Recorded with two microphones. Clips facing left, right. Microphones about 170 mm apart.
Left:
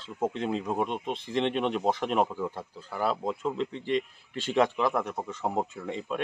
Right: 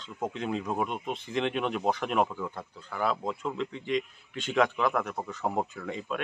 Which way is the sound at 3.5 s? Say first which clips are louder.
Left 2 dB; 35° left (ahead or behind).